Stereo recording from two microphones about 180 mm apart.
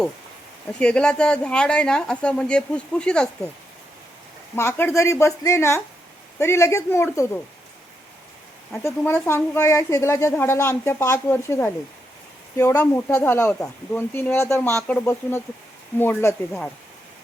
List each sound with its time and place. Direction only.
0.7 s speech: 5° left (ahead or behind)
4.5 s a woman's voice: 15° left (ahead or behind)
8.7 s a woman's voice: 15° left (ahead or behind)